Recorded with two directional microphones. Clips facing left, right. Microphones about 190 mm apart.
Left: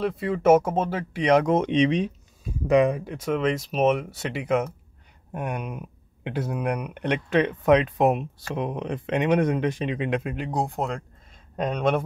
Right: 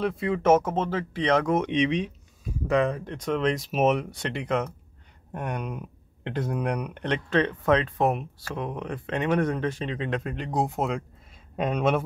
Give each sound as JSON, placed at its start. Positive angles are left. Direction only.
{"t": 0.0, "sound": "speech", "side_deg": 0}
{"t": 1.5, "sound": "speech", "side_deg": 30}
{"t": 2.7, "sound": "speech", "side_deg": 15}